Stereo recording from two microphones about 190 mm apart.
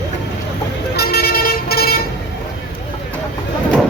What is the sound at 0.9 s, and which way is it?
Vehicle, 55° left (ahead or behind).